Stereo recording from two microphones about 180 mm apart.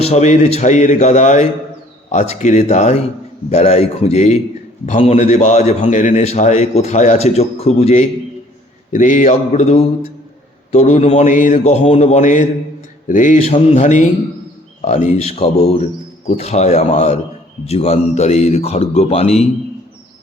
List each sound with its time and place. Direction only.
0.0 s a man's voice: 40° left (ahead or behind)